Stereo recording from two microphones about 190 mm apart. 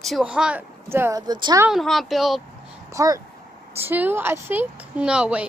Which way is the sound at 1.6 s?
Centre (ahead or behind).